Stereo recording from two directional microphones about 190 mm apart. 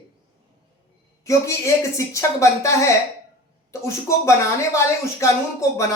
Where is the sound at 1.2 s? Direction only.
15° left (ahead or behind).